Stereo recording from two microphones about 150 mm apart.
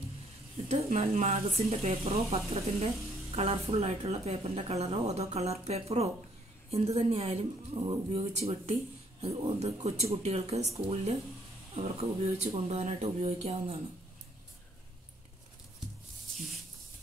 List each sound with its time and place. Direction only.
0.9 s speech: 45° right (ahead or behind)